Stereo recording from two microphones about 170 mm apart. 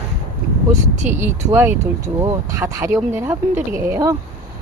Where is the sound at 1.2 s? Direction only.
15° right (ahead or behind).